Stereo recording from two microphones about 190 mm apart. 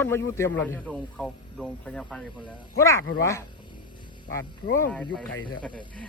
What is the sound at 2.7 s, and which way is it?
Speech, 15° left (ahead or behind).